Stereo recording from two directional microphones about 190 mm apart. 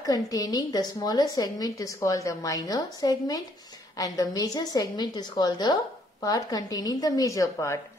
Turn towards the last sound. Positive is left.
turn(degrees=15)  # may be behind; listen again after turning